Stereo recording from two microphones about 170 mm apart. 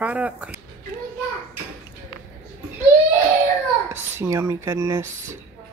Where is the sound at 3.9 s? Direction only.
15° right (ahead or behind).